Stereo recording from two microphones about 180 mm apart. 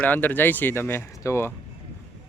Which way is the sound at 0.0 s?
10° left (ahead or behind).